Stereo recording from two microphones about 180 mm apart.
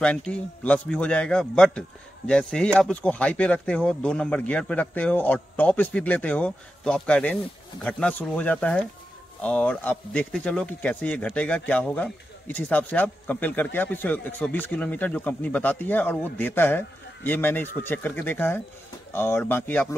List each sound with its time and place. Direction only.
0.0 s speech: 5° left (ahead or behind)